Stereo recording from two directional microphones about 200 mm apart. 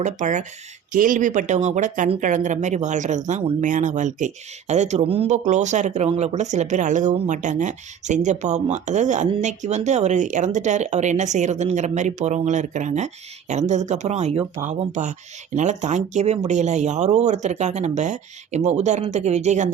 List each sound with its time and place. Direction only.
0.0 s speech: 35° right (ahead or behind)